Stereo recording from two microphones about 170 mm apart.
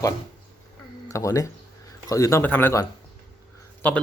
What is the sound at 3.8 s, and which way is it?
Speech, 10° left (ahead or behind).